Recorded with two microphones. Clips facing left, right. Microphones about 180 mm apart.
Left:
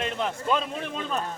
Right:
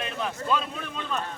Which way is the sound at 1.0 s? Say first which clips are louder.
Even; 35° left (ahead or behind).